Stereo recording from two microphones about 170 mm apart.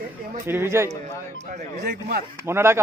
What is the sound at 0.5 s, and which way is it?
Speech, 15° right (ahead or behind).